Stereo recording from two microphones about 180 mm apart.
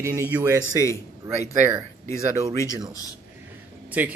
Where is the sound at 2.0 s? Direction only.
15° left (ahead or behind).